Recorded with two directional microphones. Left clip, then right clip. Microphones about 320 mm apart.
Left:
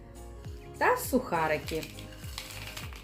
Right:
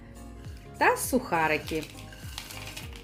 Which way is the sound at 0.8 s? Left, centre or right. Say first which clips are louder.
Right 2 dB; right.